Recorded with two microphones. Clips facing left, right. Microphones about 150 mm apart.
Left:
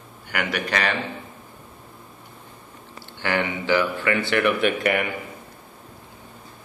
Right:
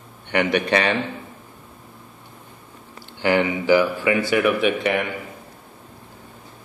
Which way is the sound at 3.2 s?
15° right (ahead or behind).